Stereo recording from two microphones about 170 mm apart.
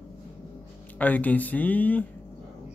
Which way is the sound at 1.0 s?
10° left (ahead or behind).